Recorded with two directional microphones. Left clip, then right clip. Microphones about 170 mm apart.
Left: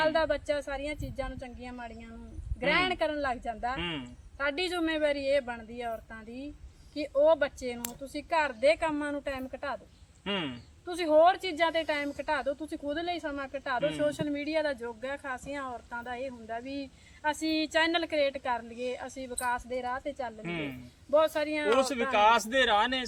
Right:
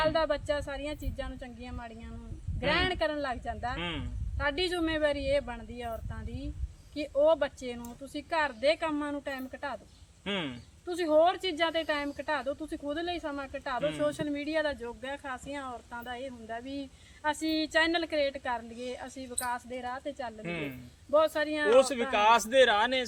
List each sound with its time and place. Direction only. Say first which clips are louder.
0.0 s speech: left 1 dB; 15° left (ahead or behind)
3.8 s speech: left 1 dB; 25° right (ahead or behind)
4.4 s speech: even; 15° left (ahead or behind)
10.2 s speech: left 1 dB; 25° right (ahead or behind)
10.8 s speech: left 2 dB; 15° left (ahead or behind)
20.4 s speech: even; 20° right (ahead or behind)
21.1 s speech: even; 15° left (ahead or behind)
21.8 s speech: right 1 dB; 20° right (ahead or behind)